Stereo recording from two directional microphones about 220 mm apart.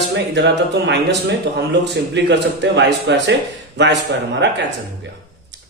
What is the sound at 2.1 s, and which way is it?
A man's voice, 50° right (ahead or behind).